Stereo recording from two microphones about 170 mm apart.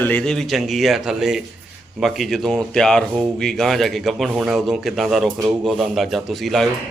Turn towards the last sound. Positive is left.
turn(degrees=0)  # may be behind; listen again after turning